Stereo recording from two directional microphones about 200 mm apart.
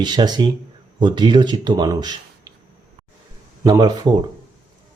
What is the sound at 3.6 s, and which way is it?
Speech, 20° right (ahead or behind).